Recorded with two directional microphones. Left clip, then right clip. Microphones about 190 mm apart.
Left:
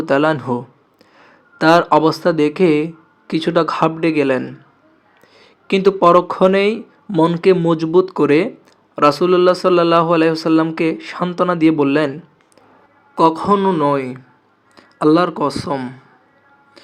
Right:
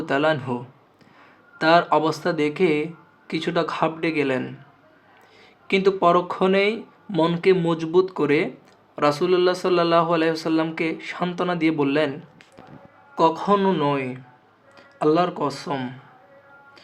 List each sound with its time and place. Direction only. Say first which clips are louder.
0.0 s speech: left 6 dB; 25° left (ahead or behind)